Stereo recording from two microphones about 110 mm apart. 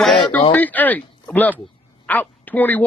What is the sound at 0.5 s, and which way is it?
A man's voice, 15° left (ahead or behind).